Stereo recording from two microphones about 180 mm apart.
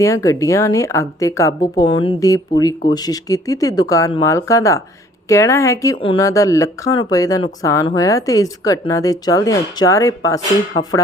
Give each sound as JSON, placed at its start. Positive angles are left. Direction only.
{"t": 0.0, "sound": "a woman's voice", "side_deg": 15}
{"t": 6.0, "sound": "speech", "side_deg": 30}
{"t": 6.2, "sound": "speech", "side_deg": 20}